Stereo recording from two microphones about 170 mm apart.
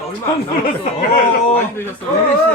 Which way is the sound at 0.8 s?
50° left (ahead or behind).